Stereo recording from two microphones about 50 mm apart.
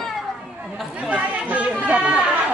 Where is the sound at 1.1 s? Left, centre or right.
Right.